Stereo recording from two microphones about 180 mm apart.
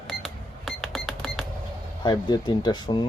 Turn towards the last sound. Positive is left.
turn(degrees=25)  # may be behind; listen again after turning